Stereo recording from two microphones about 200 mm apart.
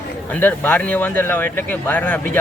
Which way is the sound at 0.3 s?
10° left (ahead or behind).